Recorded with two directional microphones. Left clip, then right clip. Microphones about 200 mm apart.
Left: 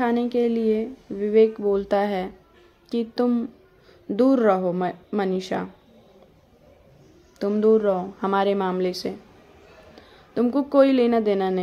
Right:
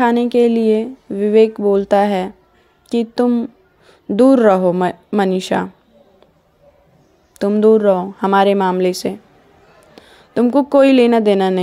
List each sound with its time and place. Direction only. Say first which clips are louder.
0.0 s speech: right 9 dB; 35° right (ahead or behind)
7.3 s speech: right 7 dB; 35° right (ahead or behind)